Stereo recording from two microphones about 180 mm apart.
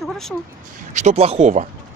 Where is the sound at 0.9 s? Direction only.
40° right (ahead or behind).